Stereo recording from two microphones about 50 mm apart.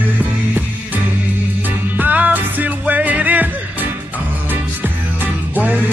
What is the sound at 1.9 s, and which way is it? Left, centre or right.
Music, right.